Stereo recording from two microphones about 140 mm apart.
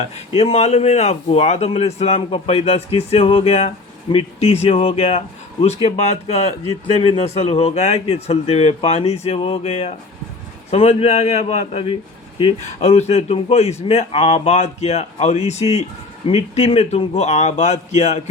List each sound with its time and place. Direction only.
0.0 s speech: 50° left (ahead or behind)